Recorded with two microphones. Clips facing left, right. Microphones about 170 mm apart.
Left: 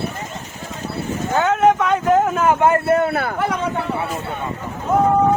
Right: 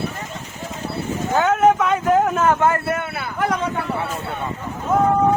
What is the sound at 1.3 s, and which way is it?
Vehicle, 5° right (ahead or behind).